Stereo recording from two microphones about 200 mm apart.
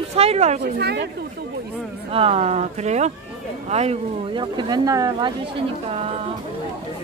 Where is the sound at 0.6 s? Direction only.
55° right (ahead or behind).